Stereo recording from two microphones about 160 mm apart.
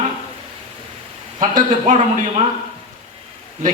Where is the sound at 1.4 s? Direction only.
60° right (ahead or behind).